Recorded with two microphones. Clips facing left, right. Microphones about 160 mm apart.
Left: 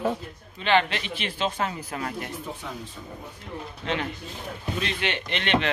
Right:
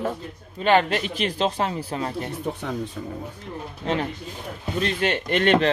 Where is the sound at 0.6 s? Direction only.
45° right (ahead or behind).